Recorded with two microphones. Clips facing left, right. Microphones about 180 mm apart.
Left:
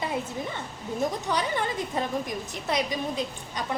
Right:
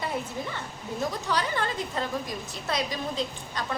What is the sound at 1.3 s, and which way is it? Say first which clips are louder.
A woman's voice: left 1 dB; 15° left (ahead or behind).